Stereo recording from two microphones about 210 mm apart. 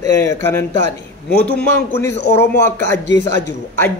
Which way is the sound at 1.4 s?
5° left (ahead or behind).